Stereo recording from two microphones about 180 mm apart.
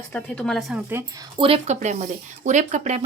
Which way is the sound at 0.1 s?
5° left (ahead or behind).